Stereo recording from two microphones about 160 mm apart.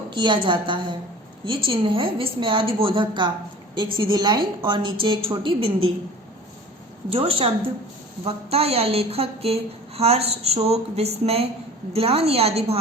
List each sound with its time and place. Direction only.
0.1 s a woman's voice: 30° right (ahead or behind)
7.1 s a woman's voice: 35° right (ahead or behind)